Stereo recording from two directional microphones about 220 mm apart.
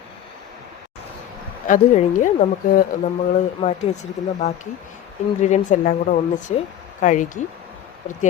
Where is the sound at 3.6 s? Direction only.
20° left (ahead or behind).